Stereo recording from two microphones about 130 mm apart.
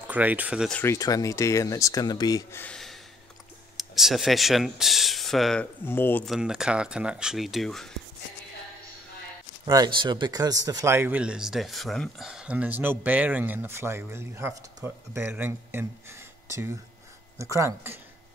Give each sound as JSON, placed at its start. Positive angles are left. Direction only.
{"t": 0.1, "sound": "speech", "side_deg": -10}
{"t": 0.8, "sound": "speech", "side_deg": 25}
{"t": 2.5, "sound": "speech", "side_deg": 10}
{"t": 3.7, "sound": "speech", "side_deg": 0}
{"t": 5.9, "sound": "speech", "side_deg": 15}
{"t": 6.2, "sound": "speech", "side_deg": -5}
{"t": 9.7, "sound": "speech", "side_deg": -30}